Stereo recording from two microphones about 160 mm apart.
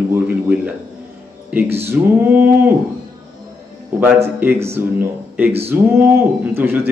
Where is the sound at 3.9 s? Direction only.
10° right (ahead or behind).